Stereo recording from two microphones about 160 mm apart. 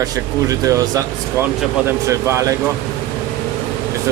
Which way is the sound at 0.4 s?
20° right (ahead or behind).